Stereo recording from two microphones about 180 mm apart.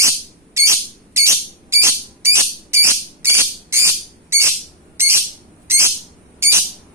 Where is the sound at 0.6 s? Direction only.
15° right (ahead or behind).